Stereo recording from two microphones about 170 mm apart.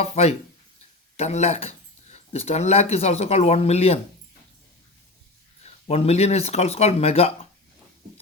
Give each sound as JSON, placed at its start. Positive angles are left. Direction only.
{"t": 0.0, "sound": "speech", "side_deg": 40}
{"t": 5.6, "sound": "speech", "side_deg": 40}